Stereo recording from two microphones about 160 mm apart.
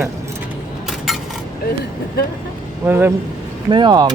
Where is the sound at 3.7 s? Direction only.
30° right (ahead or behind).